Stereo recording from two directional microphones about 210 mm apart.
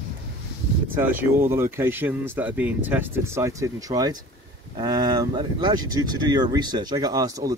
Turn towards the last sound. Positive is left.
turn(degrees=-20)  # may be behind; listen again after turning